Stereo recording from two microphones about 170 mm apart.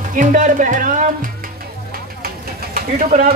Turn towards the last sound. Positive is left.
turn(degrees=-50)  # may be behind; listen again after turning